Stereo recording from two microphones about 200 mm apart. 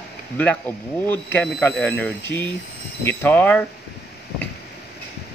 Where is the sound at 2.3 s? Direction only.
55° left (ahead or behind).